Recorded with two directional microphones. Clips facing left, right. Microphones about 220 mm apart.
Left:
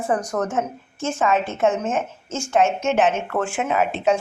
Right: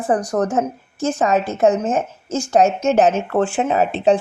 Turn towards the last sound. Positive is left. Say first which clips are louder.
# right 4 dB
turn(degrees=-35)  # may be behind; listen again after turning